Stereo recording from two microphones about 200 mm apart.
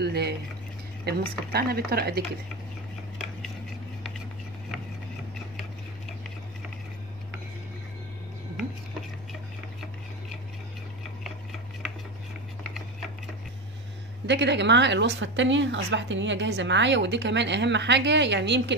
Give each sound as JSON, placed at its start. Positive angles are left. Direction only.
{"t": 0.0, "sound": "boiling", "side_deg": -55}
{"t": 1.0, "sound": "speech", "side_deg": -50}
{"t": 14.2, "sound": "a woman's voice", "side_deg": -60}